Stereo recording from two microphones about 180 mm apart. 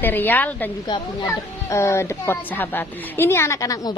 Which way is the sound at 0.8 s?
20° left (ahead or behind).